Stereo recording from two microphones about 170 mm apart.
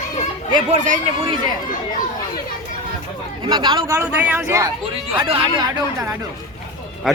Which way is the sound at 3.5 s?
25° right (ahead or behind).